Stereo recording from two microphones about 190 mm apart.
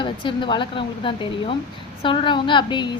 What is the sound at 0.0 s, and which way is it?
A woman's voice, 25° left (ahead or behind).